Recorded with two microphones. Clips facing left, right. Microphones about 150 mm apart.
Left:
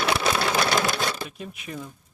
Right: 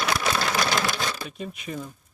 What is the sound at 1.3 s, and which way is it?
Speech, centre (ahead or behind).